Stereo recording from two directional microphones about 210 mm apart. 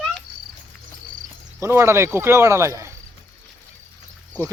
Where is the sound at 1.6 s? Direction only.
10° right (ahead or behind).